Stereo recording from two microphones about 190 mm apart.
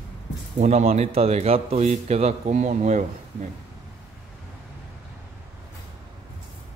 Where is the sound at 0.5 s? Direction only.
35° right (ahead or behind).